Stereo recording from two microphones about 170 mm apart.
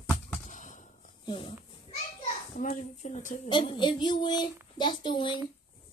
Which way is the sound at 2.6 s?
45° left (ahead or behind).